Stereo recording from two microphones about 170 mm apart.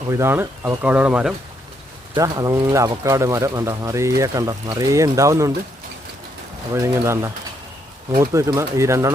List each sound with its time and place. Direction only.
0.1 s speech: 15° right (ahead or behind)
2.1 s speech: 20° right (ahead or behind)
6.7 s speech: 15° right (ahead or behind)